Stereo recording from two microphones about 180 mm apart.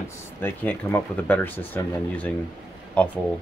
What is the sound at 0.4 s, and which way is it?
Speech, 10° left (ahead or behind).